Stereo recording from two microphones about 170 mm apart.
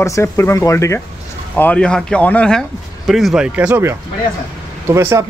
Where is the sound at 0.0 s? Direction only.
15° left (ahead or behind); by 3.9 s 10° right (ahead or behind).